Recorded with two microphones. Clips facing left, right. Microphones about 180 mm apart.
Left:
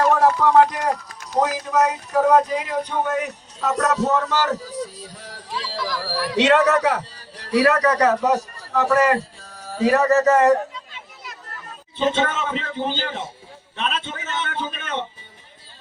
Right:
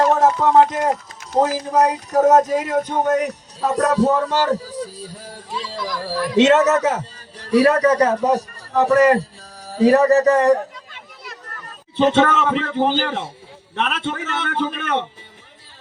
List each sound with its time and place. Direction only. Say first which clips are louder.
0.1 s a man's voice: right 1 dB; 20° right (ahead or behind)
10.8 s a sound: left 1 dB; 55° right (ahead or behind)
11.9 s a man's voice: right 6 dB; 70° right (ahead or behind)